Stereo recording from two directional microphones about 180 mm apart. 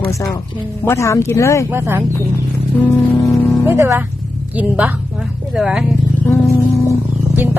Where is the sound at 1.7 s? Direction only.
15° right (ahead or behind).